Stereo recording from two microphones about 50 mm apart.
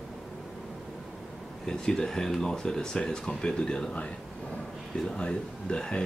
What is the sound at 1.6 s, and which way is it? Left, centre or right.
Speech, centre.